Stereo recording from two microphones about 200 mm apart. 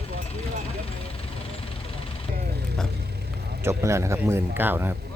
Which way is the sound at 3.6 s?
15° right (ahead or behind).